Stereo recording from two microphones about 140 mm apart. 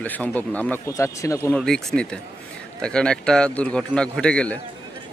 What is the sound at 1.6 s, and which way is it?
Speech, 5° left (ahead or behind).